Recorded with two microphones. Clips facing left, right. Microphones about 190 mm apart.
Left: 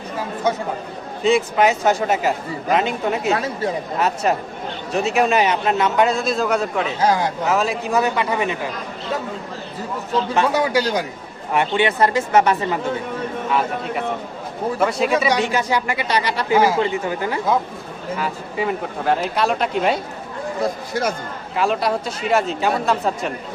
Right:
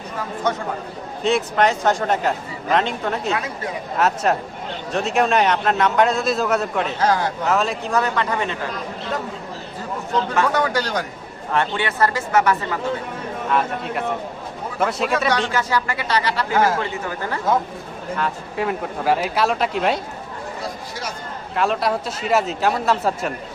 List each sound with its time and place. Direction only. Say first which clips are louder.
1.2 s speech: left 2 dB; centre (ahead or behind)
3.3 s speech: left 4 dB; 30° left (ahead or behind)
3.9 s speech: right 3 dB; centre (ahead or behind)
7.0 s speech: left 1 dB; 15° left (ahead or behind)
7.4 s speech: left 1 dB; 5° left (ahead or behind)
10.5 s speech: left 2 dB; 10° left (ahead or behind)
13.5 s speech: right 1 dB; centre (ahead or behind)
15.3 s speech: left 2 dB; 15° left (ahead or behind)
18.2 s speech: even; centre (ahead or behind)
21.5 s speech: left 1 dB; centre (ahead or behind)